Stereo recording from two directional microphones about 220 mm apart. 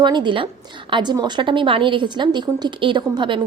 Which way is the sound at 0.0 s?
20° right (ahead or behind).